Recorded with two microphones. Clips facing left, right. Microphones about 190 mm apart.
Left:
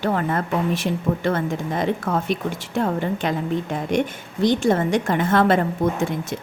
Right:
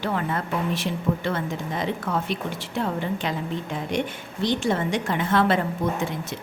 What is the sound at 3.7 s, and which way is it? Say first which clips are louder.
A woman's voice: left 3 dB; 45° left (ahead or behind).